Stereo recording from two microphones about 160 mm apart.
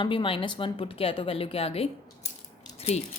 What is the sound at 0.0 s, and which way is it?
A woman's voice, 30° left (ahead or behind).